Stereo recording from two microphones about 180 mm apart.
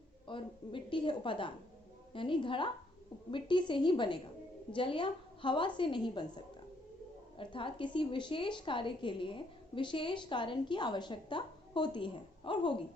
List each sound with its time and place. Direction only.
0.3 s a woman's voice: 30° left (ahead or behind)
7.3 s a woman's voice: 30° left (ahead or behind)